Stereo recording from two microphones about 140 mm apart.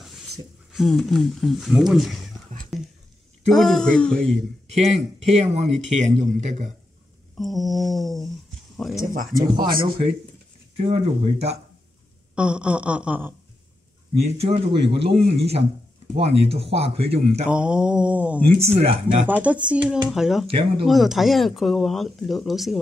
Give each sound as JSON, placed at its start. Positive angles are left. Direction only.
{"t": 0.7, "sound": "speech", "side_deg": 0}
{"t": 3.4, "sound": "speech", "side_deg": 0}
{"t": 4.7, "sound": "a man's voice", "side_deg": -55}
{"t": 7.3, "sound": "a sound", "side_deg": 0}
{"t": 8.7, "sound": "speech", "side_deg": 0}
{"t": 9.0, "sound": "speech", "side_deg": -90}
{"t": 10.8, "sound": "speech", "side_deg": -50}
{"t": 12.4, "sound": "speech", "side_deg": -5}
{"t": 14.2, "sound": "speech", "side_deg": -50}
{"t": 17.5, "sound": "speech", "side_deg": -10}
{"t": 18.5, "sound": "speech", "side_deg": -45}
{"t": 19.2, "sound": "speech", "side_deg": -10}